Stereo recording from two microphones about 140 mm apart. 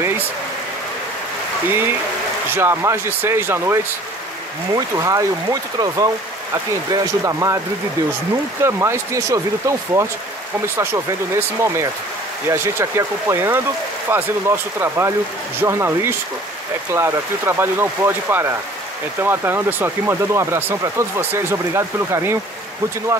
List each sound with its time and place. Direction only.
2.5 s speech: 20° right (ahead or behind)
8.6 s speech: 20° right (ahead or behind)